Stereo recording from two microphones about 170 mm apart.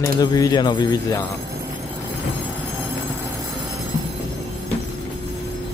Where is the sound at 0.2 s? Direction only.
20° left (ahead or behind).